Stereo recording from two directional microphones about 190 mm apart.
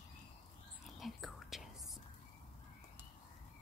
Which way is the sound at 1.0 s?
Centre (ahead or behind).